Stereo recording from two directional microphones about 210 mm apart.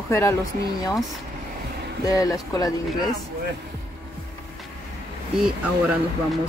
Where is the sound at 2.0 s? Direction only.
15° left (ahead or behind).